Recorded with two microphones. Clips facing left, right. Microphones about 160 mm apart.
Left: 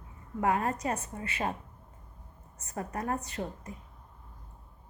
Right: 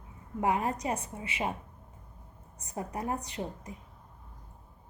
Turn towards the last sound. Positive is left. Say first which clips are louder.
# even
turn(degrees=-15)  # may be behind; listen again after turning